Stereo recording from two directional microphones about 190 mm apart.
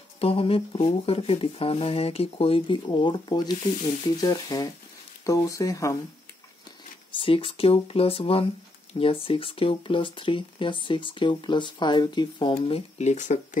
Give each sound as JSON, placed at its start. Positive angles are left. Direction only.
{"t": 0.2, "sound": "speech", "side_deg": 30}
{"t": 7.1, "sound": "speech", "side_deg": 25}